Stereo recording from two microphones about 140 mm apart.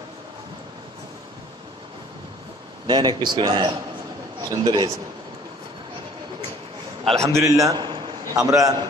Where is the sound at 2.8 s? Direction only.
30° right (ahead or behind).